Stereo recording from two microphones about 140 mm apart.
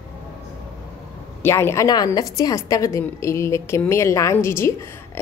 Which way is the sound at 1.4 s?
20° left (ahead or behind).